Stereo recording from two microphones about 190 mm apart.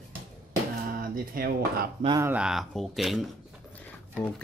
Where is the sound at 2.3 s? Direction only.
5° right (ahead or behind).